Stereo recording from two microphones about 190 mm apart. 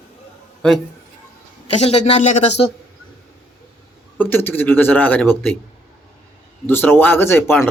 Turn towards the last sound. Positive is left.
turn(degrees=15)  # may be behind; listen again after turning